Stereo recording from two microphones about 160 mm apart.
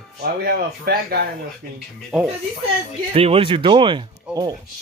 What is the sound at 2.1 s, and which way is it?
Speech, 5° right (ahead or behind).